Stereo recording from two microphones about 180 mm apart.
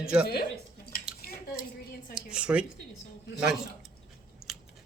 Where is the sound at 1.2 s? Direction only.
55° left (ahead or behind).